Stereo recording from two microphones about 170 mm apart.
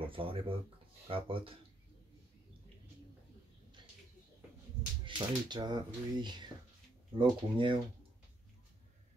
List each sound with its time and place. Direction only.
0.0 s speech: 30° right (ahead or behind)
5.0 s speech: 25° right (ahead or behind)